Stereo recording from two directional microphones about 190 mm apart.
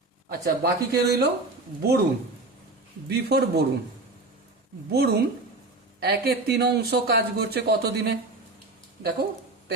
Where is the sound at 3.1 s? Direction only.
55° right (ahead or behind).